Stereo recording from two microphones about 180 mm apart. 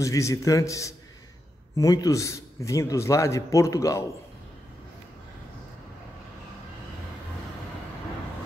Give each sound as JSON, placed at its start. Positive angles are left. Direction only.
{"t": 0.0, "sound": "a man's voice", "side_deg": 20}